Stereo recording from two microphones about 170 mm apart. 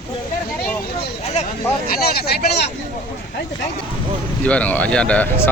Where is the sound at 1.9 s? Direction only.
65° left (ahead or behind).